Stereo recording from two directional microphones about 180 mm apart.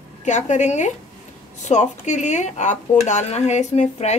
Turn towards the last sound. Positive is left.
turn(degrees=35)  # may be behind; listen again after turning